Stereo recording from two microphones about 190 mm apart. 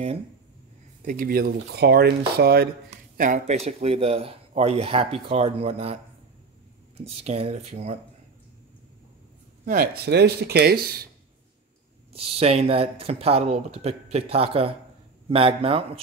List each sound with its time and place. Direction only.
1.0 s speech: 45° right (ahead or behind)
3.2 s a man's voice: 40° right (ahead or behind)
7.1 s a man's voice: 30° right (ahead or behind)
9.7 s speech: 55° right (ahead or behind)
12.1 s a man's voice: 30° right (ahead or behind)